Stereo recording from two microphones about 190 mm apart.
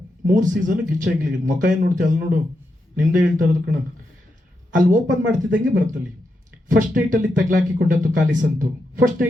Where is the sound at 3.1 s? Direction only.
45° right (ahead or behind).